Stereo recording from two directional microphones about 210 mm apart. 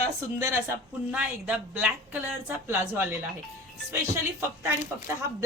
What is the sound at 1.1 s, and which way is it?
Speech, 5° right (ahead or behind).